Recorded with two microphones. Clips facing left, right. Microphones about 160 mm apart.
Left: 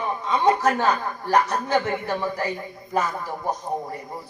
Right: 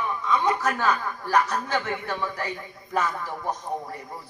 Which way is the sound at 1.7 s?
40° left (ahead or behind).